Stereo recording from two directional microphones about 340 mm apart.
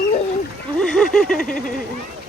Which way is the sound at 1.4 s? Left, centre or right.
Left.